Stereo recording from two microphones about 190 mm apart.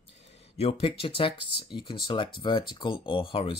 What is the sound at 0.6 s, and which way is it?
Speech, 30° left (ahead or behind).